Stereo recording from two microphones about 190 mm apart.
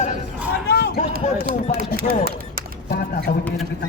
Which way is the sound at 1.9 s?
55° right (ahead or behind).